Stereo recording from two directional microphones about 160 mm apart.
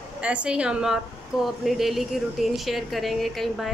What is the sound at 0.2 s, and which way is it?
A woman's voice, 5° right (ahead or behind).